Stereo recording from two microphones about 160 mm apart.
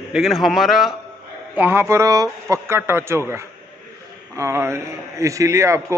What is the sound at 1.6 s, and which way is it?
A man's voice, 15° right (ahead or behind).